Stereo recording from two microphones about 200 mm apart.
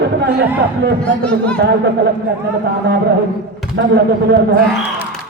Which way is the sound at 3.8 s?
55° right (ahead or behind).